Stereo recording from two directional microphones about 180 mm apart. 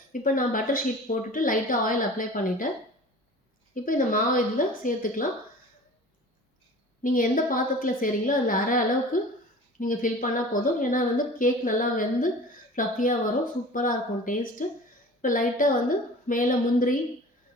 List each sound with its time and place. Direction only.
0.1 s a woman's voice: 50° left (ahead or behind)
3.8 s a woman's voice: 50° left (ahead or behind)
7.0 s a woman's voice: 50° left (ahead or behind)